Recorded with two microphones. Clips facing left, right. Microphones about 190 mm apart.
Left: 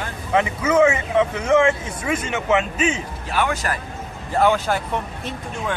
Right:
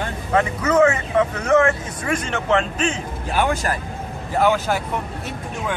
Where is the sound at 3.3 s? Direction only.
35° right (ahead or behind).